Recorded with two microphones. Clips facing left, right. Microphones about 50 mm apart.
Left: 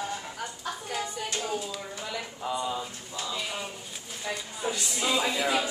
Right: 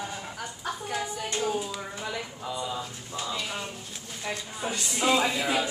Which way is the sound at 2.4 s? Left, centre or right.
Centre.